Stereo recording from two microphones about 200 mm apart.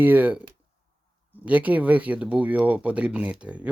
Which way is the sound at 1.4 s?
10° right (ahead or behind).